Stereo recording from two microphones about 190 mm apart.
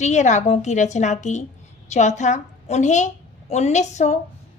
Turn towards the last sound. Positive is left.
turn(degrees=40)  # may be behind; listen again after turning